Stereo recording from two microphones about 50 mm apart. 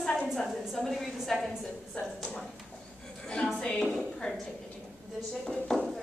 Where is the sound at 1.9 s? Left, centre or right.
Left.